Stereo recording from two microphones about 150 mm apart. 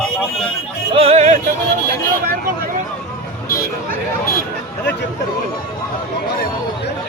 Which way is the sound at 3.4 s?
75° left (ahead or behind).